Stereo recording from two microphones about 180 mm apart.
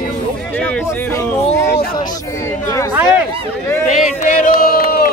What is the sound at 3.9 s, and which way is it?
Speech, 40° left (ahead or behind).